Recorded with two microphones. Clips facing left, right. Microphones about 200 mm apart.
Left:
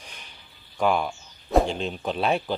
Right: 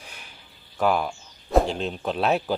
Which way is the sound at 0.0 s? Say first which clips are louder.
Right 1 dB; 5° right (ahead or behind).